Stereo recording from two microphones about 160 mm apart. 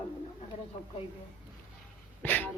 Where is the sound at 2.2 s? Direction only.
10° left (ahead or behind).